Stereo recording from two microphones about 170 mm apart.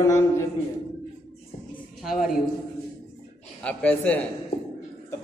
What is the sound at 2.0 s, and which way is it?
Speech, centre (ahead or behind).